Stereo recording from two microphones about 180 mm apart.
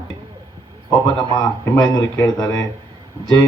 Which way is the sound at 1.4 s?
20° left (ahead or behind).